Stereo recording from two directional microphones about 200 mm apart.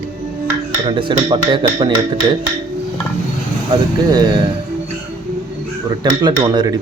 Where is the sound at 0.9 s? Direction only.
25° right (ahead or behind).